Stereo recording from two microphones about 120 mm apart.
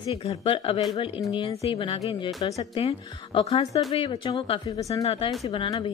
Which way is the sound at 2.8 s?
55° left (ahead or behind).